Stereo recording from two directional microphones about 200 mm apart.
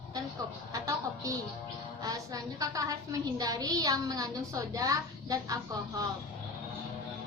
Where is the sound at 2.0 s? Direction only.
15° right (ahead or behind).